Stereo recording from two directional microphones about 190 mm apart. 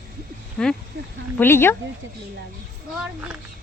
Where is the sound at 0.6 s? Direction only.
5° left (ahead or behind).